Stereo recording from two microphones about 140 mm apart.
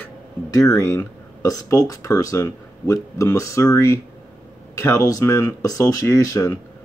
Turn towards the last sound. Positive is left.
turn(degrees=20)  # may be behind; listen again after turning